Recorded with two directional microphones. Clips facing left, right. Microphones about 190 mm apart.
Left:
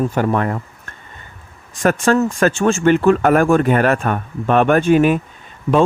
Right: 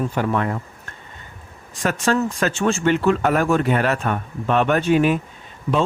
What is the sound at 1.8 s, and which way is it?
Speech, 50° left (ahead or behind).